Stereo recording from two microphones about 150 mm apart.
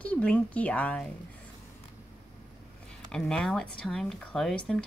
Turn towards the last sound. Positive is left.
turn(degrees=5)  # may be behind; listen again after turning